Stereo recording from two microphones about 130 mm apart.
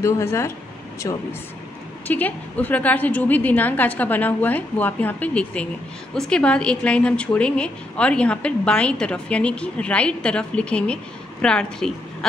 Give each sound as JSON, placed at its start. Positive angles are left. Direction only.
{"t": 0.0, "sound": "speech", "side_deg": 20}
{"t": 2.0, "sound": "a woman's voice", "side_deg": 10}